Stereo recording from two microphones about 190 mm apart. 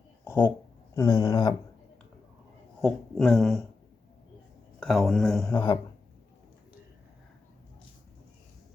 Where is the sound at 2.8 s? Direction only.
Centre (ahead or behind).